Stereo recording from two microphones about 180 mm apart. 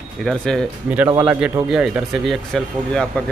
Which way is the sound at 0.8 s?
10° right (ahead or behind).